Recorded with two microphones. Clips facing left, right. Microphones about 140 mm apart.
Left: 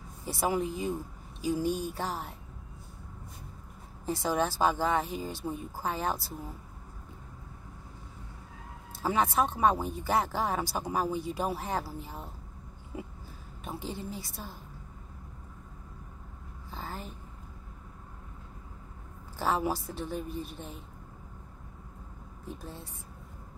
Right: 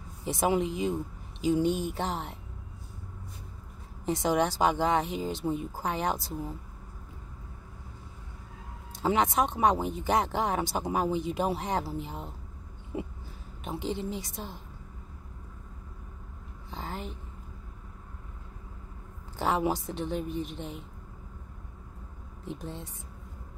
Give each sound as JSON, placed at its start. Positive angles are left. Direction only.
{"t": 0.2, "sound": "speech", "side_deg": -20}
{"t": 4.0, "sound": "speech", "side_deg": -20}
{"t": 8.9, "sound": "speech", "side_deg": -20}
{"t": 13.7, "sound": "speech", "side_deg": -20}
{"t": 16.7, "sound": "a sound", "side_deg": -20}
{"t": 19.3, "sound": "speech", "side_deg": -20}
{"t": 22.4, "sound": "speech", "side_deg": -20}